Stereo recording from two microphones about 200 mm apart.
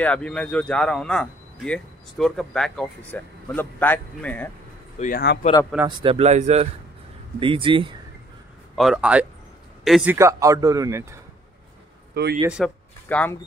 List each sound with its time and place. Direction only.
0.0 s speech: 5° left (ahead or behind)
4.9 s speech: 40° left (ahead or behind)
5.9 s speech: 30° right (ahead or behind)
8.7 s speech: centre (ahead or behind)
10.1 s speech: 15° right (ahead or behind)
12.1 s a man's voice: 50° right (ahead or behind)
12.4 s speech: centre (ahead or behind)